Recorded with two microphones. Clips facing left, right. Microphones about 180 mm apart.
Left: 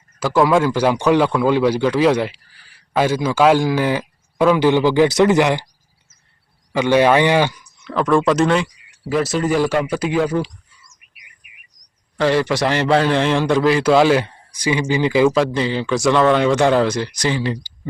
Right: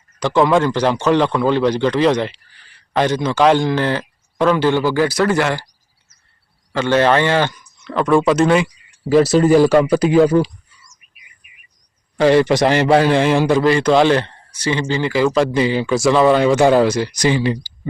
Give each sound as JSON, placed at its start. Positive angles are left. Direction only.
{"t": 0.2, "sound": "a man's voice", "side_deg": 5}
{"t": 6.7, "sound": "a man's voice", "side_deg": 15}
{"t": 7.9, "sound": "a man's voice", "side_deg": 0}
{"t": 9.0, "sound": "speech", "side_deg": -35}
{"t": 10.8, "sound": "bird", "side_deg": 70}
{"t": 12.1, "sound": "a man's voice", "side_deg": -15}
{"t": 15.5, "sound": "speech", "side_deg": -10}